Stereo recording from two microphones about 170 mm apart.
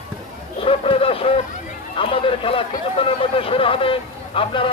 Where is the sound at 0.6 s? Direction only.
35° left (ahead or behind).